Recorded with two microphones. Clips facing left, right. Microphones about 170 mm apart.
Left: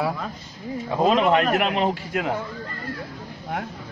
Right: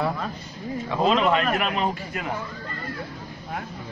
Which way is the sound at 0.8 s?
40° left (ahead or behind).